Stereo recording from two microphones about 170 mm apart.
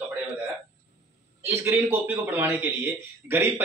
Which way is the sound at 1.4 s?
15° right (ahead or behind).